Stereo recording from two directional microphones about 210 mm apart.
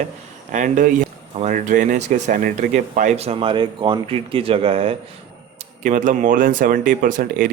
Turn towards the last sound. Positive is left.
turn(degrees=-40)  # may be behind; listen again after turning